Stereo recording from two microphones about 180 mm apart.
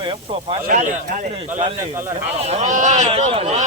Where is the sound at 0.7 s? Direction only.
45° right (ahead or behind).